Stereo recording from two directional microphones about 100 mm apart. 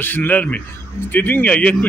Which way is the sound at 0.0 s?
20° left (ahead or behind).